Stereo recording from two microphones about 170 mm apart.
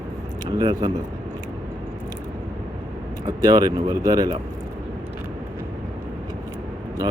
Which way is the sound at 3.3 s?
20° right (ahead or behind).